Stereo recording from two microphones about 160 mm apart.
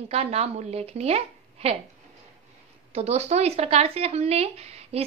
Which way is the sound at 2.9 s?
40° right (ahead or behind).